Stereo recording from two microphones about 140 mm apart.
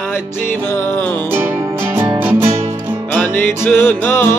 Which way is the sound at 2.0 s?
15° right (ahead or behind).